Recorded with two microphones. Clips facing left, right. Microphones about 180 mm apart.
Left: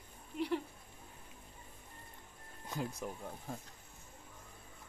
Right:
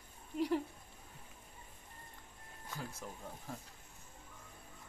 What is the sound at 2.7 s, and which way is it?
Speech, 20° left (ahead or behind).